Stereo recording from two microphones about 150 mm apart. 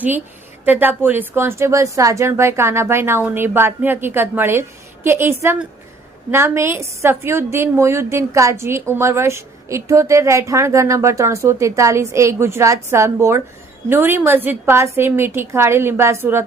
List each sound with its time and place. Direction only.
0.6 s a woman's voice: 10° right (ahead or behind)